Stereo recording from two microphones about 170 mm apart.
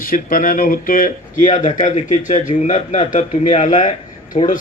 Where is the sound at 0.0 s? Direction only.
55° left (ahead or behind).